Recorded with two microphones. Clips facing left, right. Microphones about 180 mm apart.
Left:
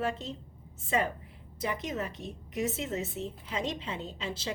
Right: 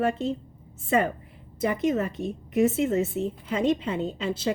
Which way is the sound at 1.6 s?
55° right (ahead or behind).